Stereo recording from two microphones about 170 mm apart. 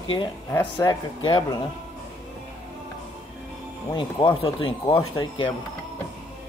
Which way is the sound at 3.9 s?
30° left (ahead or behind).